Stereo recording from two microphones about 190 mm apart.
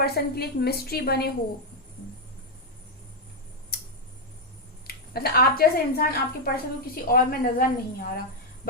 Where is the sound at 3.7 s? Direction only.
55° left (ahead or behind).